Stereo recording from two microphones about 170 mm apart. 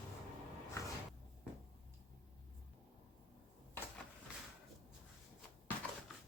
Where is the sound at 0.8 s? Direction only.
15° left (ahead or behind).